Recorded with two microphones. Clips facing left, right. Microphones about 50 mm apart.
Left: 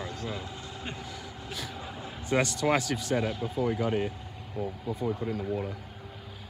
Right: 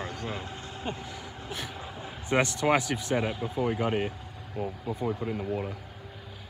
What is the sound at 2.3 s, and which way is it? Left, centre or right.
A man's voice, right.